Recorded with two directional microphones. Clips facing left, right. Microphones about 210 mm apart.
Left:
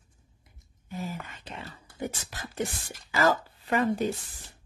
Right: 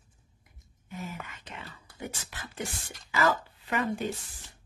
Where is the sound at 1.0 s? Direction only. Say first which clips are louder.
Left 4 dB; 35° left (ahead or behind).